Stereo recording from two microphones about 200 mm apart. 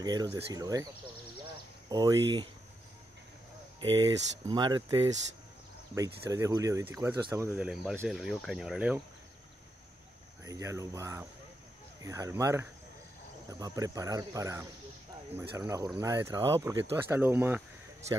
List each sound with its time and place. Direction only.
0.0 s speech: 20° right (ahead or behind)
1.9 s speech: 20° right (ahead or behind)
3.8 s speech: 20° right (ahead or behind); by 9.0 s 5° right (ahead or behind)
10.4 s speech: 15° right (ahead or behind)